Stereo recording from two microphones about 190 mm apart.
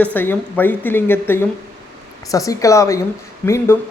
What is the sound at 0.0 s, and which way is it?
Speech, 10° left (ahead or behind).